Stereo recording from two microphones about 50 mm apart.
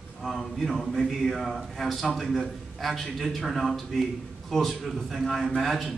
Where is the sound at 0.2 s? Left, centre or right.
Centre.